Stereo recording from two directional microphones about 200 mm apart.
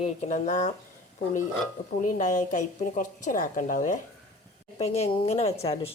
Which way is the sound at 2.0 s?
40° left (ahead or behind).